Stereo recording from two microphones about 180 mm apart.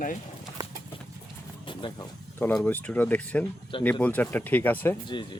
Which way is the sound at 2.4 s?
10° left (ahead or behind).